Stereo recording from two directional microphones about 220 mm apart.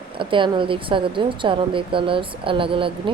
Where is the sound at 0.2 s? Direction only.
20° right (ahead or behind).